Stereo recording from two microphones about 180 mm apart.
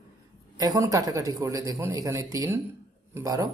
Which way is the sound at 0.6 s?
20° right (ahead or behind).